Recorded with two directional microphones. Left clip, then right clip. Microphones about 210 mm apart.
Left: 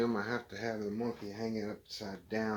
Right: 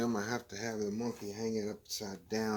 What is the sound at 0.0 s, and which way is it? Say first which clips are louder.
Speech: left 2 dB; 50° right (ahead or behind).